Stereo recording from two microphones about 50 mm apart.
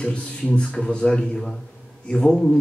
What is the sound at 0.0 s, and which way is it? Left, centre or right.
A man's voice, centre.